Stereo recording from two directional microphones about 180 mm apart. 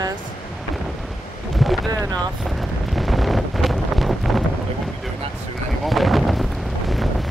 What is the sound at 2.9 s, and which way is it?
Wind noise, centre (ahead or behind).